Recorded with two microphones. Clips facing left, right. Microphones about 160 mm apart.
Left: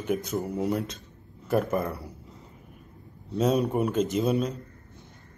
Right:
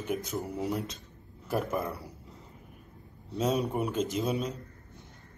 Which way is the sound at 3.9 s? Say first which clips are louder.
Left 5 dB; 55° left (ahead or behind).